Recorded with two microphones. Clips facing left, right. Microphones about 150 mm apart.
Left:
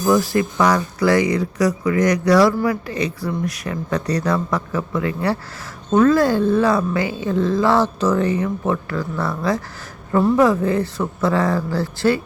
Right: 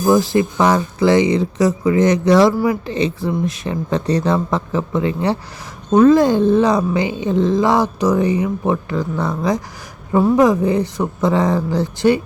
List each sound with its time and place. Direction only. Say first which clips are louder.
0.0 s speech: right 3 dB; 25° right (ahead or behind)